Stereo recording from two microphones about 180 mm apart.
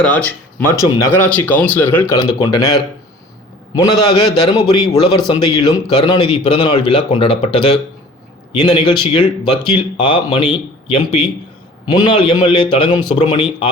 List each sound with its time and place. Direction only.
0.0 s speech: 10° left (ahead or behind)
2.1 s a man's voice: 20° left (ahead or behind)